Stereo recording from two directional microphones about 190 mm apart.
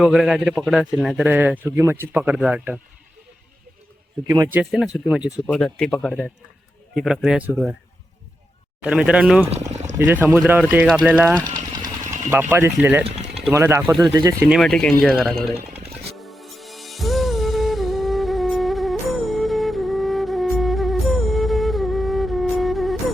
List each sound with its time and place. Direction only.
0.0 s a man's voice: 5° right (ahead or behind)
4.3 s speech: 15° right (ahead or behind)
4.6 s a man's voice: centre (ahead or behind)
8.8 s a man's voice: 5° right (ahead or behind)
10.8 s a man's voice: 5° left (ahead or behind)
11.1 s speech: 10° right (ahead or behind)
11.3 s engine: 20° right (ahead or behind)
12.3 s speech: 10° right (ahead or behind)
14.5 s a man's voice: 5° left (ahead or behind)
16.1 s music: centre (ahead or behind)